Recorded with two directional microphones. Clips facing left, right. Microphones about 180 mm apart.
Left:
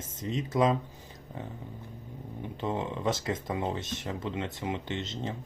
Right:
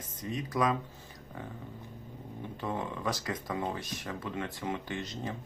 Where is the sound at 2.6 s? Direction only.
25° left (ahead or behind).